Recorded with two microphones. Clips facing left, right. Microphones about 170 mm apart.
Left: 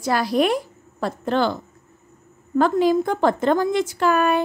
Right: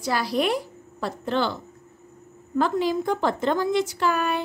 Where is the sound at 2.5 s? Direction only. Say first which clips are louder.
Left 5 dB; 50° left (ahead or behind).